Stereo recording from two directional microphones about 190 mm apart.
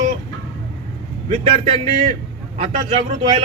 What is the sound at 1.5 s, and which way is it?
A man's voice, 30° right (ahead or behind).